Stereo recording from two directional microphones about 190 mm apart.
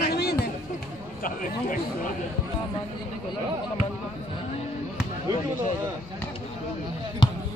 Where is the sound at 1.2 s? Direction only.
45° left (ahead or behind).